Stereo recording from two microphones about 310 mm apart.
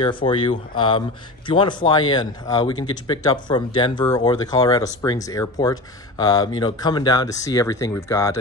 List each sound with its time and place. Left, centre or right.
0.0 s speech: centre